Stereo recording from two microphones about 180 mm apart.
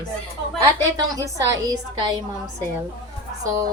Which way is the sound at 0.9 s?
20° right (ahead or behind).